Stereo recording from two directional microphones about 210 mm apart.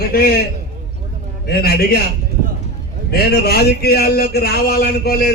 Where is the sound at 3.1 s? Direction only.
45° left (ahead or behind).